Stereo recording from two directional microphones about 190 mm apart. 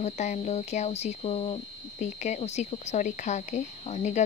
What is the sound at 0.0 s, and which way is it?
Speech, 35° left (ahead or behind).